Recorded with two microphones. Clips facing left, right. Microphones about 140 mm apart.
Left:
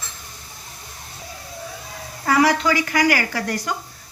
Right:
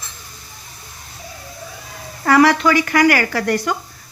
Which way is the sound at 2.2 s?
65° right (ahead or behind).